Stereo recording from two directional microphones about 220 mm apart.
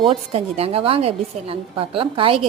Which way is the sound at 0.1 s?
25° right (ahead or behind).